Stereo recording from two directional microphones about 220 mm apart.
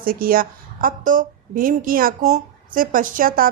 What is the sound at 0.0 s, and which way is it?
A woman's voice, 40° right (ahead or behind).